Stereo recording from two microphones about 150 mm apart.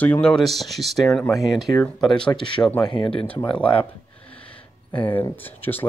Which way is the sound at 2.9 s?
35° left (ahead or behind).